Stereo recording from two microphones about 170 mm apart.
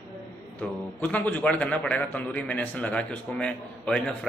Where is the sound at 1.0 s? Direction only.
10° left (ahead or behind).